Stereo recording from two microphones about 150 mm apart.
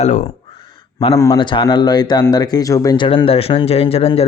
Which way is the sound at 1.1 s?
20° left (ahead or behind).